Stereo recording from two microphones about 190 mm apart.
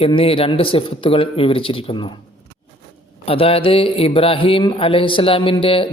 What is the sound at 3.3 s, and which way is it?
A woman's voice, 30° left (ahead or behind).